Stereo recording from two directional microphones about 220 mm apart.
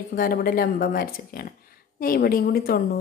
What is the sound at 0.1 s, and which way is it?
Speech, 40° left (ahead or behind).